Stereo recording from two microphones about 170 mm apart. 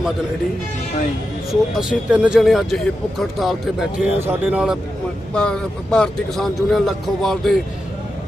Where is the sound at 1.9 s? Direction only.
5° right (ahead or behind).